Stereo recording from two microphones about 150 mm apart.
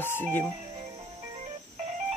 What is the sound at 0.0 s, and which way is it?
Speech, 15° left (ahead or behind).